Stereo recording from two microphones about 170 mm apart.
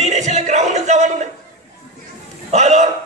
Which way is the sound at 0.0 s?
45° right (ahead or behind).